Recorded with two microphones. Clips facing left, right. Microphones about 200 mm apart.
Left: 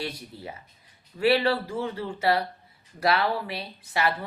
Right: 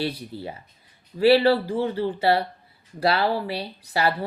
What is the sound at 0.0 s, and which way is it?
A woman's voice, 30° right (ahead or behind).